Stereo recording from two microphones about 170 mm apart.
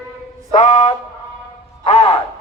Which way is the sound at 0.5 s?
40° left (ahead or behind).